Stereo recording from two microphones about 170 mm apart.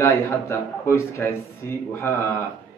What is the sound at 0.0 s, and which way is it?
A man's voice, 15° left (ahead or behind).